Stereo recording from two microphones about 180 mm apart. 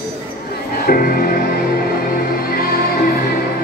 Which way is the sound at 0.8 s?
55° left (ahead or behind).